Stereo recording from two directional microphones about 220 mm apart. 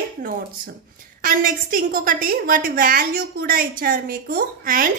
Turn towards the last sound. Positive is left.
turn(degrees=-40)  # may be behind; listen again after turning